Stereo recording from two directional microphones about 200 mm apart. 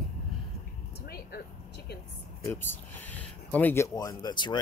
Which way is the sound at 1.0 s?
50° left (ahead or behind).